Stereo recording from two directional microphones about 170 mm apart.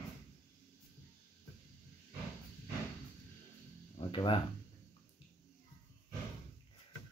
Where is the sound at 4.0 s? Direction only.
30° left (ahead or behind).